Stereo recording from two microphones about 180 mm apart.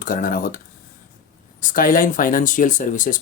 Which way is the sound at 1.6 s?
50° left (ahead or behind).